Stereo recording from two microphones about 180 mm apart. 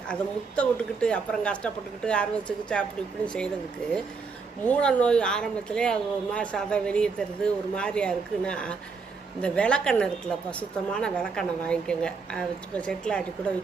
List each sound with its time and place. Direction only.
0.1 s speech: 5° left (ahead or behind)
4.6 s speech: 5° left (ahead or behind)